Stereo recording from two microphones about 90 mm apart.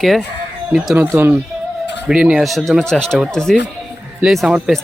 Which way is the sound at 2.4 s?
Centre (ahead or behind).